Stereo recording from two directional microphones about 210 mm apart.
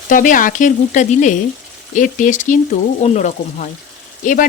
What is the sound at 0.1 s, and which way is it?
A woman's voice, 40° left (ahead or behind).